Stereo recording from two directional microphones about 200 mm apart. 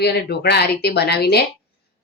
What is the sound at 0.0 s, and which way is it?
Speech, 55° left (ahead or behind).